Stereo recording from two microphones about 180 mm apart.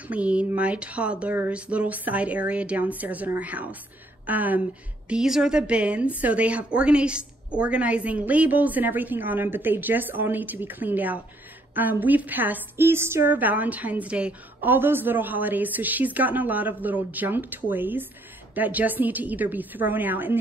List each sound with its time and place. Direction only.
0.1 s a woman's voice: 5° right (ahead or behind)